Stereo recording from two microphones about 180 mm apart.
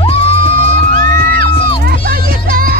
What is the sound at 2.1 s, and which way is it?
Music, 55° right (ahead or behind).